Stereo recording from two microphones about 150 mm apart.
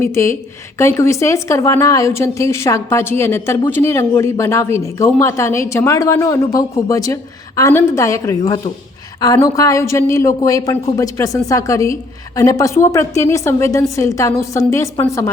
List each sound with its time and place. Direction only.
0.0 s a woman's voice: 20° left (ahead or behind)